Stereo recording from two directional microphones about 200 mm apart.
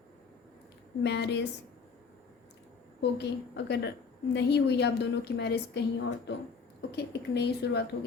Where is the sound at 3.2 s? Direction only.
60° left (ahead or behind).